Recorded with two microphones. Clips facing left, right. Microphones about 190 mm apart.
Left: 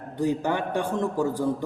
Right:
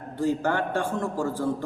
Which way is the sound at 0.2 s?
15° left (ahead or behind).